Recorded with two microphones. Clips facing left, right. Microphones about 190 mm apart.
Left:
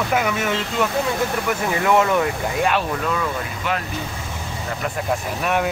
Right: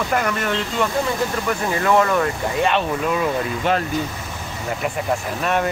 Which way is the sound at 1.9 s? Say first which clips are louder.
Even; 15° left (ahead or behind).